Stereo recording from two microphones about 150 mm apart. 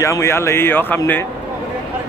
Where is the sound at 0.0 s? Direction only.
20° left (ahead or behind).